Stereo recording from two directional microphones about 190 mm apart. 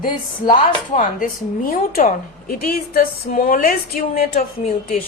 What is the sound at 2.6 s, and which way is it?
Speech, 50° left (ahead or behind).